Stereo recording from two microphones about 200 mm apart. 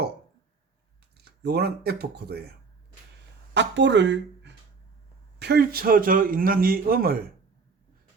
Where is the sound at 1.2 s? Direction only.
55° right (ahead or behind).